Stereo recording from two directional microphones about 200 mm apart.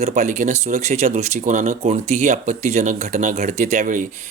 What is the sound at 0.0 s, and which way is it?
Speech, 35° right (ahead or behind).